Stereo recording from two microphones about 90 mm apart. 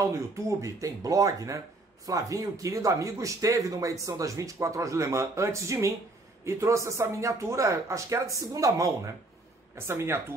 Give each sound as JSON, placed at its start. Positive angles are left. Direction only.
{"t": 0.0, "sound": "speech", "side_deg": -35}
{"t": 9.8, "sound": "speech", "side_deg": -25}